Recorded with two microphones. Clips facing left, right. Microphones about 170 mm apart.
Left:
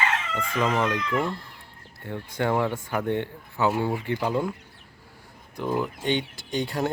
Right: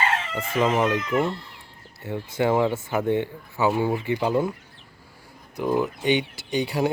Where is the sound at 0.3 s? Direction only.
25° right (ahead or behind).